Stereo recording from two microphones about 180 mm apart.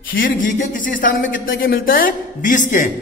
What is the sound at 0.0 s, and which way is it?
A man's voice, 55° left (ahead or behind).